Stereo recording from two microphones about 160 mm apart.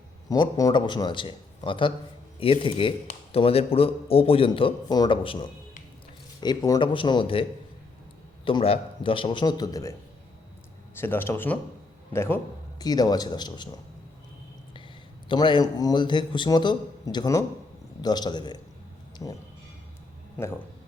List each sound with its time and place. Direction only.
0.3 s a man's voice: 20° left (ahead or behind)
8.4 s speech: 35° left (ahead or behind)
10.9 s a man's voice: 15° left (ahead or behind)
15.3 s a man's voice: 30° left (ahead or behind)